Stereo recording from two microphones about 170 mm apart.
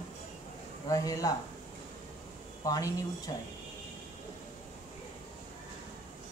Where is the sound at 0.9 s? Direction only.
20° left (ahead or behind).